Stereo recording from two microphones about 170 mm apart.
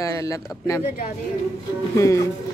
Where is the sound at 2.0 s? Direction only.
20° left (ahead or behind).